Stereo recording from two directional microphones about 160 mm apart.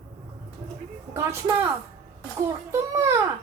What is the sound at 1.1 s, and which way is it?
A woman's voice, 15° right (ahead or behind).